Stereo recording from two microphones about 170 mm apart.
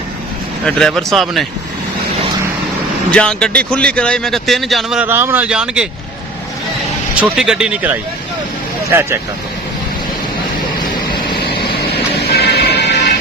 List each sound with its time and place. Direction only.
0.6 s speech: 5° left (ahead or behind)
3.1 s speech: 5° left (ahead or behind)
5.0 s speech: 15° right (ahead or behind)
7.2 s speech: 5° right (ahead or behind)
11.3 s vehicle: 70° left (ahead or behind)
12.3 s music: 70° left (ahead or behind)